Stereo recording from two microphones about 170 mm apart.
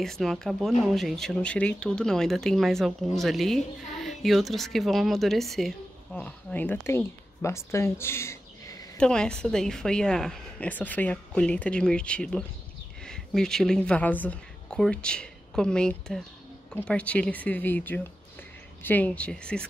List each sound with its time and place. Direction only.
0.0 s speech: centre (ahead or behind)
8.9 s a woman's voice: 5° left (ahead or behind)